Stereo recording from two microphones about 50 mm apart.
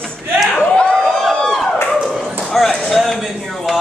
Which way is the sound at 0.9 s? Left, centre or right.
Centre.